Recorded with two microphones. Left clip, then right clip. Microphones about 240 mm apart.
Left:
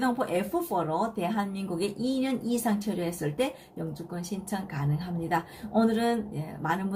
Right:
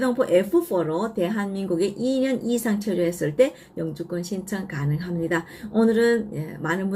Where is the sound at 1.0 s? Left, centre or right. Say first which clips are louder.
Right 4 dB; left.